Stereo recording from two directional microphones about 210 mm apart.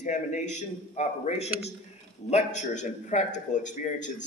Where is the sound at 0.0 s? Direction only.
35° left (ahead or behind).